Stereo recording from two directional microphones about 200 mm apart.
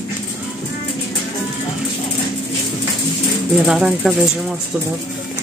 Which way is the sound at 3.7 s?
5° right (ahead or behind).